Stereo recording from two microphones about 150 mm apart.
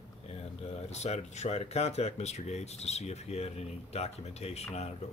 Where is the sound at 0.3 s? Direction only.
45° left (ahead or behind).